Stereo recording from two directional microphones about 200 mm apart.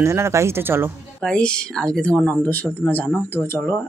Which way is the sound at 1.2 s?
5° left (ahead or behind).